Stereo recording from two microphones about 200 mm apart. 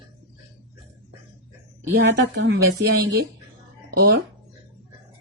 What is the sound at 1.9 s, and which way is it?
Speech, 60° right (ahead or behind).